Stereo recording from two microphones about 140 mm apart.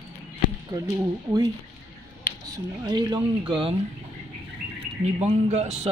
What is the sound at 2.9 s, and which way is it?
Speech, 30° right (ahead or behind).